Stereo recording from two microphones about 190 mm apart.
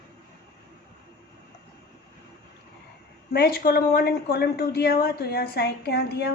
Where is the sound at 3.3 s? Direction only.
55° left (ahead or behind).